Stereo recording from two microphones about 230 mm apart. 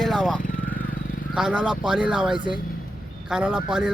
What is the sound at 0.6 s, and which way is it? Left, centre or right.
Vehicle, centre.